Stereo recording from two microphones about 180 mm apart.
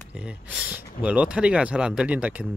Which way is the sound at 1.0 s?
5° right (ahead or behind).